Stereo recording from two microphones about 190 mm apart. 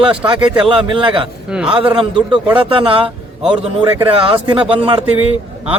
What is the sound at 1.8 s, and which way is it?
Speech, 5° right (ahead or behind).